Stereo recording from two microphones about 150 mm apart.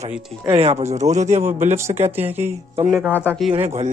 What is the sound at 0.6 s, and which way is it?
Speech, 45° right (ahead or behind).